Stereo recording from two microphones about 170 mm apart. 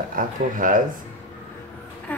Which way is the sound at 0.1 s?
55° right (ahead or behind).